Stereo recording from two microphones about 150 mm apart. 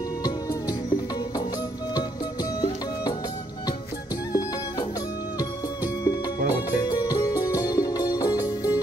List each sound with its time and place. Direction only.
4.3 s music: 25° left (ahead or behind)
6.0 s music: 25° left (ahead or behind)